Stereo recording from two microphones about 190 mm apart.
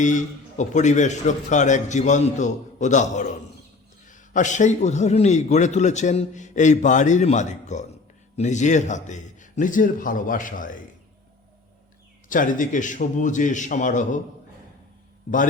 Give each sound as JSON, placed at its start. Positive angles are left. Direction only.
{"t": 0.0, "sound": "a man's voice", "side_deg": 40}
{"t": 12.3, "sound": "a man's voice", "side_deg": 45}